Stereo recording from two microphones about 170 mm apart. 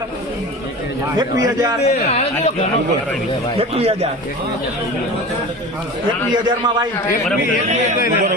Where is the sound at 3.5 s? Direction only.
35° right (ahead or behind).